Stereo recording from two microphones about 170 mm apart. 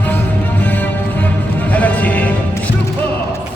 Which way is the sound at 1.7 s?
10° left (ahead or behind).